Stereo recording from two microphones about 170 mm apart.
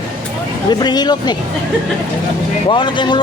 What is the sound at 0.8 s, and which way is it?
Speech, 25° left (ahead or behind).